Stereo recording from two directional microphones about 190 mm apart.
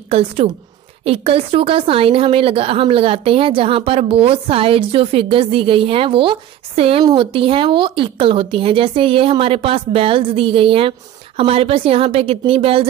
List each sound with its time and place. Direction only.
0.1 s a woman's voice: 30° right (ahead or behind)